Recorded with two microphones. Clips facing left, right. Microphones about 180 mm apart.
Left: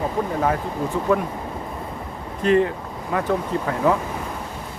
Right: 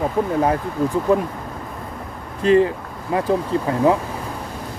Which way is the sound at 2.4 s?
30° right (ahead or behind).